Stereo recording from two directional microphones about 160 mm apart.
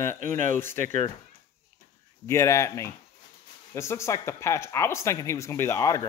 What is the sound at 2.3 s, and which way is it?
Speech, 20° left (ahead or behind).